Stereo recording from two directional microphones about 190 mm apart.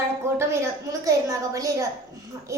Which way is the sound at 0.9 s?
15° right (ahead or behind).